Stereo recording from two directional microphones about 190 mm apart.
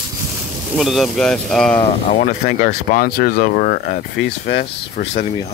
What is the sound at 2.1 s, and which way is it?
Speech, 45° left (ahead or behind).